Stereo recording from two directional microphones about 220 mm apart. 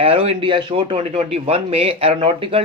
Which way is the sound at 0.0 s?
25° right (ahead or behind).